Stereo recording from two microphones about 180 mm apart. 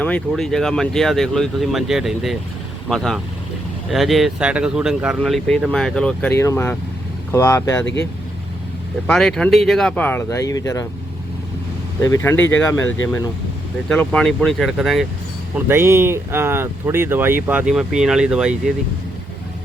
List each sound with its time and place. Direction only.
0.0 s speech: 5° left (ahead or behind)
9.0 s speech: centre (ahead or behind); by 10.8 s 20° left (ahead or behind)
12.0 s speech: 15° left (ahead or behind)
13.8 s speech: 5° left (ahead or behind)
15.5 s speech: 10° right (ahead or behind)